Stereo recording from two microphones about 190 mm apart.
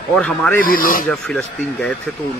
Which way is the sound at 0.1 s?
5° left (ahead or behind).